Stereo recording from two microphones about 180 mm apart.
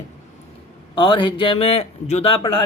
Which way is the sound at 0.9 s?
30° left (ahead or behind).